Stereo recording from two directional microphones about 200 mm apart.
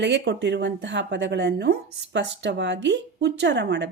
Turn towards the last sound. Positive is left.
turn(degrees=-55)  # may be behind; listen again after turning